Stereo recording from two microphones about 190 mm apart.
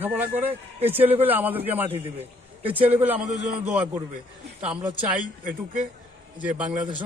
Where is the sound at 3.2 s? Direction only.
40° right (ahead or behind).